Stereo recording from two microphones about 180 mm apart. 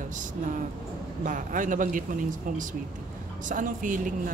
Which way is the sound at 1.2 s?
50° right (ahead or behind).